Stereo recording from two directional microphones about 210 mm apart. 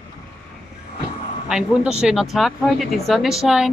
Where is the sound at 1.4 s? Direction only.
5° right (ahead or behind).